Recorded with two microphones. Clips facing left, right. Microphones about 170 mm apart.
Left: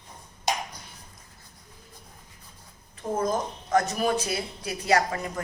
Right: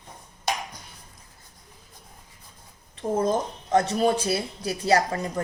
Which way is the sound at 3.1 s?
25° right (ahead or behind).